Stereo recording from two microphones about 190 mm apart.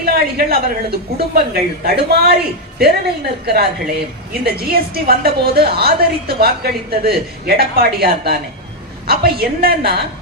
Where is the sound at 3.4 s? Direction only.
55° right (ahead or behind).